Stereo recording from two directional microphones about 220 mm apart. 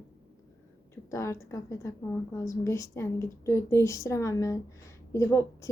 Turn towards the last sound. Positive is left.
turn(degrees=15)  # may be behind; listen again after turning